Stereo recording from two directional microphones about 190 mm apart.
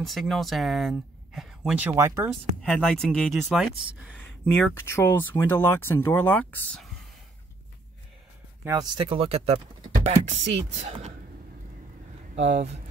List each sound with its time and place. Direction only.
0.0 s speech: centre (ahead or behind)
2.6 s speech: 5° left (ahead or behind)
8.6 s speech: 20° right (ahead or behind)
12.4 s speech: 35° right (ahead or behind)